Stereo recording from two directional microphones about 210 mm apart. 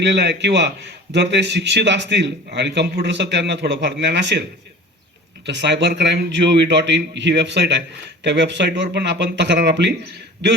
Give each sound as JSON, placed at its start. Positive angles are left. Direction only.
{"t": 0.0, "sound": "a man's voice", "side_deg": -55}
{"t": 5.5, "sound": "a man's voice", "side_deg": -55}